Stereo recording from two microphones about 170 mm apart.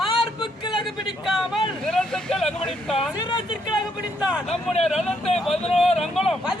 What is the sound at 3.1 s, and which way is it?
Speech, 30° left (ahead or behind).